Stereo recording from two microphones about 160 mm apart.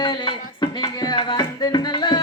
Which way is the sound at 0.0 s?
30° left (ahead or behind).